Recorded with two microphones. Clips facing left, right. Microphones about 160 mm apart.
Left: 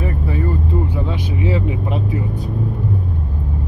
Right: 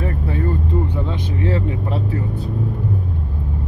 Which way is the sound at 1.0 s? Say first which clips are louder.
Left 1 dB; 10° left (ahead or behind).